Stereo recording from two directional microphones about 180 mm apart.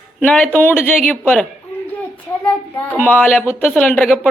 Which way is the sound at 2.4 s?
10° left (ahead or behind).